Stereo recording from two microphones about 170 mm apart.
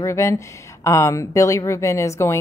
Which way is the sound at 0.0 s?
15° left (ahead or behind).